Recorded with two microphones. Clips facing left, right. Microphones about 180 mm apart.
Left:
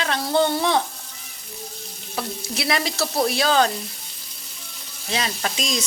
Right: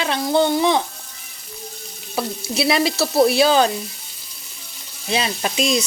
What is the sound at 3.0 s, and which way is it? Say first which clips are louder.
Frying: right 8 dB; 10° right (ahead or behind).